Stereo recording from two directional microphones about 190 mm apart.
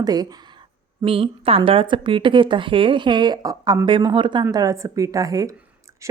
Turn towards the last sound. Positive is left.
turn(degrees=-15)  # may be behind; listen again after turning